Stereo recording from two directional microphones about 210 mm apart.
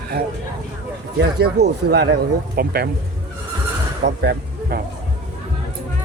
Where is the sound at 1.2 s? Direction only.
50° right (ahead or behind).